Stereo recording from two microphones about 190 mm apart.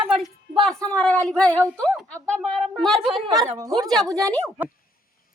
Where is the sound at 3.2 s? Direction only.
20° right (ahead or behind).